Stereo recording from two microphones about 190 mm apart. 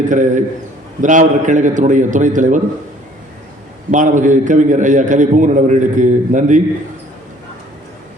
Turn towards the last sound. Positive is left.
turn(degrees=-40)  # may be behind; listen again after turning